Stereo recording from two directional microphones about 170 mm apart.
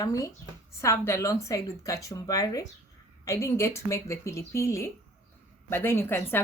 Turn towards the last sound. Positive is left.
turn(degrees=15)  # may be behind; listen again after turning